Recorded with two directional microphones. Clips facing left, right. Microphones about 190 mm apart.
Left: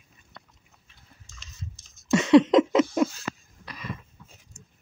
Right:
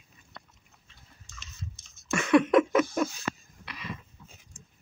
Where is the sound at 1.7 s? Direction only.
20° left (ahead or behind).